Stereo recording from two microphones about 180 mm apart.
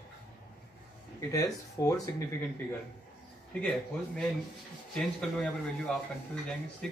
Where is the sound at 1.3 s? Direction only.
20° left (ahead or behind).